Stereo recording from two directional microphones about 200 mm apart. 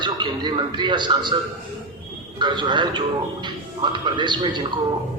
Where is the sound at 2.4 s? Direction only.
20° right (ahead or behind).